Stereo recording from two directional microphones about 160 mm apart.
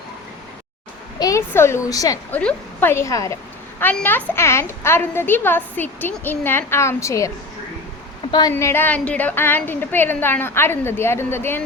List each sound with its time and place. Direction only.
1.2 s a woman's voice: 15° left (ahead or behind)
2.3 s a woman's voice: 10° left (ahead or behind)
8.3 s a woman's voice: 25° left (ahead or behind)